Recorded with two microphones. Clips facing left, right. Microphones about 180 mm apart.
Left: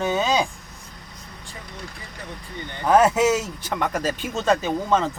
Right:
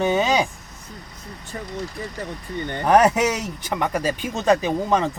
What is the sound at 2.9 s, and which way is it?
Speech, 15° right (ahead or behind).